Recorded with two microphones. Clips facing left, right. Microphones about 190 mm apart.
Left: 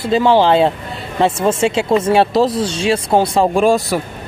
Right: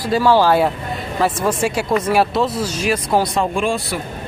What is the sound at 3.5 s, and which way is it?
Speech, 40° left (ahead or behind).